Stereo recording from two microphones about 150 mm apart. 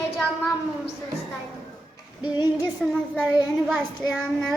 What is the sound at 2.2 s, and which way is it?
Female singing, 25° left (ahead or behind).